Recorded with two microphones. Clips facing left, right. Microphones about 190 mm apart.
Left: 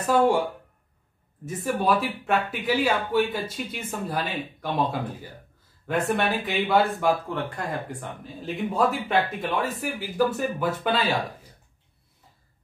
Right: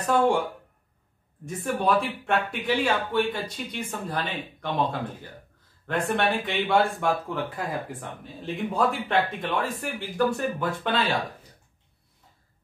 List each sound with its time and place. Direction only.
0.0 s speech: 5° left (ahead or behind)
1.4 s speech: 5° left (ahead or behind)